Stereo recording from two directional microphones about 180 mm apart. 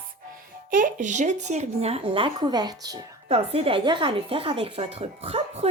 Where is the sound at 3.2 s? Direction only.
35° right (ahead or behind).